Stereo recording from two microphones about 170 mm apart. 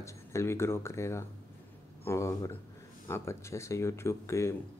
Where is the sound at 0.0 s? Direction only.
15° left (ahead or behind).